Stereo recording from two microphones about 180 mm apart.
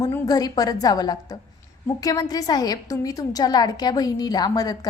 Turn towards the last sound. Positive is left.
turn(degrees=20)  # may be behind; listen again after turning